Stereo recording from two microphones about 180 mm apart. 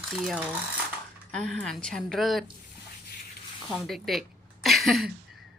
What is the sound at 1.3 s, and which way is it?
A woman's voice, 5° left (ahead or behind).